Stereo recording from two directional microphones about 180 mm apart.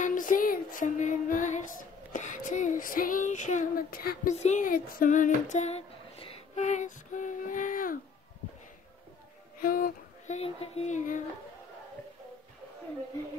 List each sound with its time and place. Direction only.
0.0 s music: 50° left (ahead or behind)
4.4 s a sound: 40° left (ahead or behind)
9.6 s speech: 55° left (ahead or behind)